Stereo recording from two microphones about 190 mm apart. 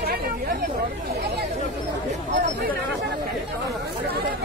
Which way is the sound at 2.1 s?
45° right (ahead or behind).